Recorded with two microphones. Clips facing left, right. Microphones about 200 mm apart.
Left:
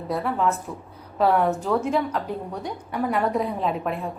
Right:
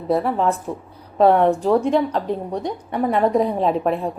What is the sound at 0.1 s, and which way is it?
Speech, 40° right (ahead or behind).